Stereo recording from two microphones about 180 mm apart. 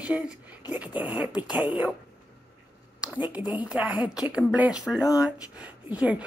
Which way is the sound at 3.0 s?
5° right (ahead or behind).